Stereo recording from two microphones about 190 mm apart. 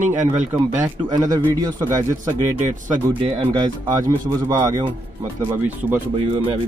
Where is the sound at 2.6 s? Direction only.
40° right (ahead or behind).